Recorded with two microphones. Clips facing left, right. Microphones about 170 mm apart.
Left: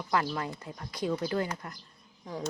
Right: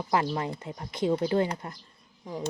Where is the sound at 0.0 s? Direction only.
25° right (ahead or behind).